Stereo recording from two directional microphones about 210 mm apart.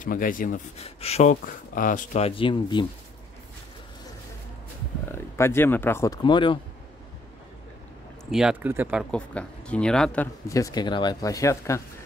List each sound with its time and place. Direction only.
0.0 s speech: 40° left (ahead or behind)
0.8 s speech: 30° left (ahead or behind)
5.1 s speech: 10° left (ahead or behind)
6.2 s speech: 20° left (ahead or behind)
8.3 s speech: 5° right (ahead or behind)
9.1 s speech: 5° left (ahead or behind)